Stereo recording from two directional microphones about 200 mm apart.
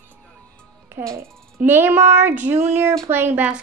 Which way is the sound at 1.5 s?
10° right (ahead or behind).